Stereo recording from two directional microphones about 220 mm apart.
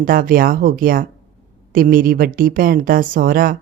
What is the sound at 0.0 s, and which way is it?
Speech, 40° right (ahead or behind).